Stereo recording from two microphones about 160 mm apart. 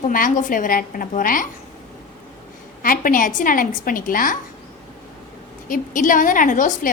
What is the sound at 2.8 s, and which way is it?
A woman's voice, 60° left (ahead or behind).